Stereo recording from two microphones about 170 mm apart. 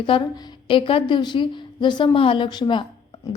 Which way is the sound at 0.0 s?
25° left (ahead or behind).